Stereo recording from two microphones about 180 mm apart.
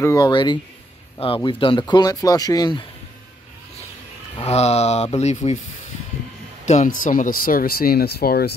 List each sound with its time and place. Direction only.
0.0 s speech: 20° left (ahead or behind)
4.4 s speech: 35° left (ahead or behind)
6.6 s speech: 40° left (ahead or behind); by 8.5 s 60° left (ahead or behind)